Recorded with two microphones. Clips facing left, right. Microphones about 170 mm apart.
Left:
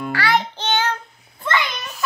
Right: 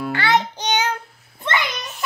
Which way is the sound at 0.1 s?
25° right (ahead or behind).